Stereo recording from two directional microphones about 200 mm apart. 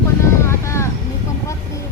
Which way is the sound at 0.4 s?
15° left (ahead or behind).